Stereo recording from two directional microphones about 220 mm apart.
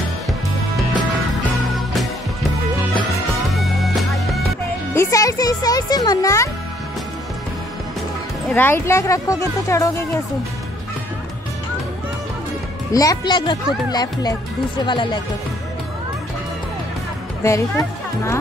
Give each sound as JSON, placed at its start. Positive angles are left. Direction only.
{"t": 3.5, "sound": "music", "side_deg": 0}
{"t": 4.9, "sound": "a child's voice", "side_deg": 15}
{"t": 8.5, "sound": "speech", "side_deg": 10}
{"t": 12.9, "sound": "speech", "side_deg": 15}
{"t": 14.9, "sound": "speech", "side_deg": 20}
{"t": 17.4, "sound": "speech", "side_deg": 15}